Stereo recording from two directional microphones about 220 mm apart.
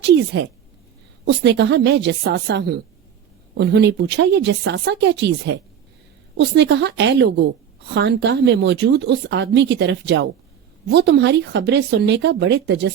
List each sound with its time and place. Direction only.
1.2 s speech: 50° right (ahead or behind)